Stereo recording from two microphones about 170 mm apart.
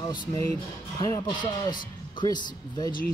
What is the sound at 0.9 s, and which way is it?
A man's voice, 25° left (ahead or behind).